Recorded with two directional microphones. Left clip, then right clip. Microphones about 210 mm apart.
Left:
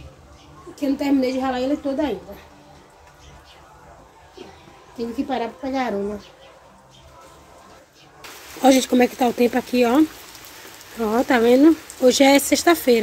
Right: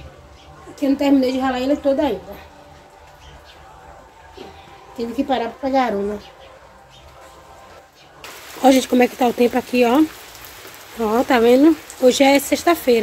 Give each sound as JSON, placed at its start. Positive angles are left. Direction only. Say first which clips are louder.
{"t": 0.7, "sound": "a woman's voice", "louder": "right 4 dB", "side_deg": 0}
{"t": 4.9, "sound": "a woman's voice", "louder": "right 4 dB", "side_deg": -5}
{"t": 8.5, "sound": "speech", "louder": "right 2 dB", "side_deg": 10}